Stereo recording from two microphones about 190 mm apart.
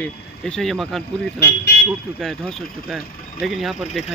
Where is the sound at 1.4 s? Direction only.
60° left (ahead or behind).